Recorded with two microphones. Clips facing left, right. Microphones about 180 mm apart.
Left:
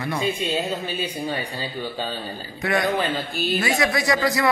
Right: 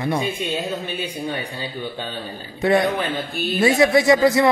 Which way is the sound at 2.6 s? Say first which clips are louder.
Right 4 dB; 25° right (ahead or behind).